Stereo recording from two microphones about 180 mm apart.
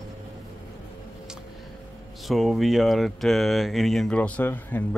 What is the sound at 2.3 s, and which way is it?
Speech, centre (ahead or behind).